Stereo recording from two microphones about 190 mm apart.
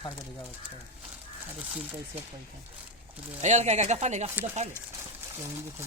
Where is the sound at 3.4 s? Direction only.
35° right (ahead or behind).